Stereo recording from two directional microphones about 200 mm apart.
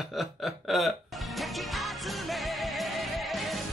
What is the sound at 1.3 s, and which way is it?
Music, centre (ahead or behind).